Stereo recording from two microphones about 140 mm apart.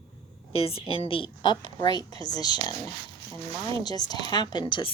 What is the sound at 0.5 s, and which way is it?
A woman's voice, 45° left (ahead or behind).